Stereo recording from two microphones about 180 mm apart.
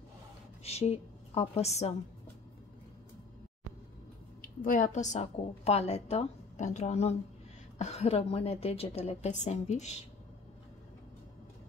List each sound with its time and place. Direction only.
0.7 s a woman's voice: 35° left (ahead or behind)
4.4 s a woman's voice: 50° left (ahead or behind)